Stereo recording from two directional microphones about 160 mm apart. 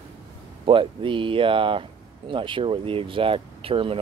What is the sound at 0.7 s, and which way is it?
Speech, 30° right (ahead or behind).